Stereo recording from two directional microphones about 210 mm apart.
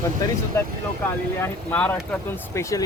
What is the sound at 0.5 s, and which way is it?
Speech, 10° left (ahead or behind).